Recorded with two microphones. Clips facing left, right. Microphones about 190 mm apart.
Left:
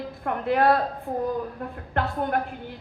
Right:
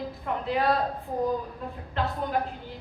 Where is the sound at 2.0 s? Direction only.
60° left (ahead or behind).